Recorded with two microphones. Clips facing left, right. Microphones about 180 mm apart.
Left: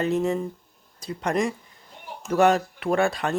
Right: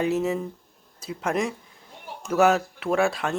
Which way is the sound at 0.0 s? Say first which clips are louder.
Left 1 dB; 5° right (ahead or behind).